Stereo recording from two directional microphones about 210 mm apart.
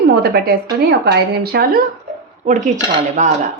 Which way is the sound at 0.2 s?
50° right (ahead or behind).